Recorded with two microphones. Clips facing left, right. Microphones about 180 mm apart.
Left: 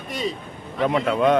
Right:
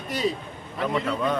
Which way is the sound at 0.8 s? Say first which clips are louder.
Left 6 dB; 70° left (ahead or behind).